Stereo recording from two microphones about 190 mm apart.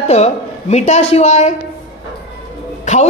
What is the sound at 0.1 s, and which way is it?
A woman's voice, 35° left (ahead or behind).